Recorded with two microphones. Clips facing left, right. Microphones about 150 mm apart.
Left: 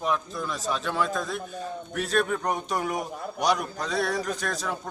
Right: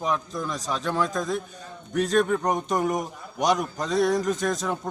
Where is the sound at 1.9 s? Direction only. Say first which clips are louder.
Right 5 dB; 5° left (ahead or behind).